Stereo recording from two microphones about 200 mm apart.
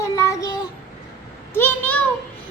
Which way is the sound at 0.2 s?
20° left (ahead or behind).